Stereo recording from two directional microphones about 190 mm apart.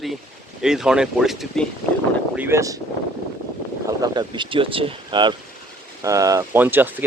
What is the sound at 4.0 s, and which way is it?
Speech, 25° right (ahead or behind).